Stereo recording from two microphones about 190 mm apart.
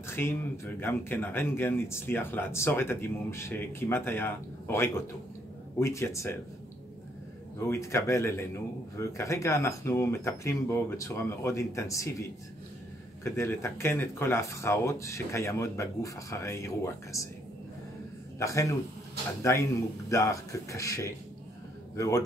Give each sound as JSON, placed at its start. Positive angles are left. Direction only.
{"t": 0.0, "sound": "speech", "side_deg": 10}
{"t": 7.6, "sound": "speech", "side_deg": 15}
{"t": 18.4, "sound": "a man's voice", "side_deg": 15}